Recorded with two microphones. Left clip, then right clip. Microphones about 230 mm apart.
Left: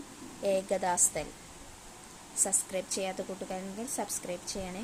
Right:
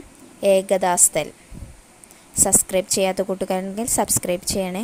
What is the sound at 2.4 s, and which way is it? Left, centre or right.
A woman's voice, right.